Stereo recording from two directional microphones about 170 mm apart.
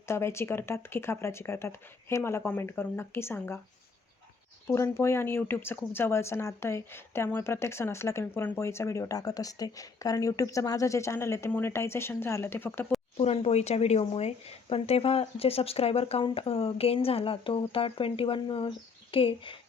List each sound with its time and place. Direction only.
0.1 s speech: 15° left (ahead or behind)
4.7 s speech: 15° left (ahead or behind)
13.1 s speech: 35° left (ahead or behind)